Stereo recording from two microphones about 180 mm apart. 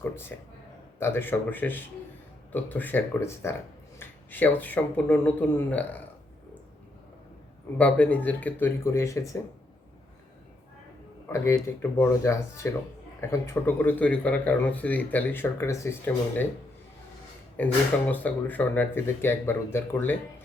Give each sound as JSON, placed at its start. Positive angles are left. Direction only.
{"t": 0.0, "sound": "a sound", "side_deg": 10}
{"t": 0.9, "sound": "speech", "side_deg": 15}
{"t": 7.8, "sound": "speech", "side_deg": 10}
{"t": 11.3, "sound": "speech", "side_deg": 15}
{"t": 17.6, "sound": "speech", "side_deg": 10}